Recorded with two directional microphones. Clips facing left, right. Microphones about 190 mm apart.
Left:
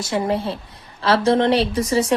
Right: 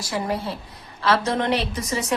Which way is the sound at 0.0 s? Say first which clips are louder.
Left 5 dB; 25° left (ahead or behind).